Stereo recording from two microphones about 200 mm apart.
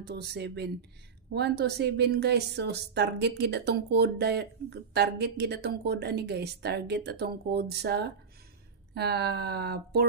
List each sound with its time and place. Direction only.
0.0 s a woman's voice: 55° right (ahead or behind)